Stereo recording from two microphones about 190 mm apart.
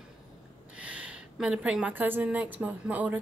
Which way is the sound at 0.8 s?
5° right (ahead or behind).